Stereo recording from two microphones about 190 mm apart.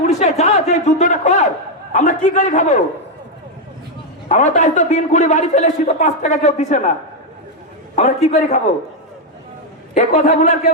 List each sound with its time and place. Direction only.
0.1 s a man's voice: 35° left (ahead or behind)
4.3 s a man's voice: 40° left (ahead or behind)
7.9 s a man's voice: 35° left (ahead or behind)
9.9 s a man's voice: 35° left (ahead or behind)